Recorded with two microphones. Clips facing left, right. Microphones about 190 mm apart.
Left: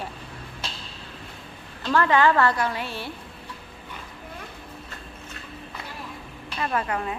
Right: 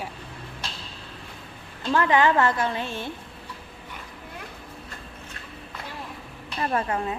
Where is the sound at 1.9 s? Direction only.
20° right (ahead or behind).